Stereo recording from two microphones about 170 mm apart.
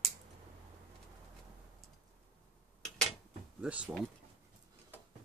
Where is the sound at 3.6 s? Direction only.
5° right (ahead or behind).